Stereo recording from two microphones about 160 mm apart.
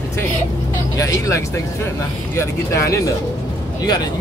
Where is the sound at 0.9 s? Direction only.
20° left (ahead or behind).